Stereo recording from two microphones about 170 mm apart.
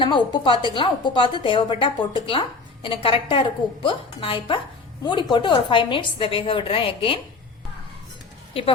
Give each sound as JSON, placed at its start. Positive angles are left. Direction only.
{"t": 0.0, "sound": "a woman's voice", "side_deg": 25}